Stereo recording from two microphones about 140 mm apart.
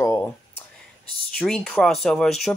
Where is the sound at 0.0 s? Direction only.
20° left (ahead or behind).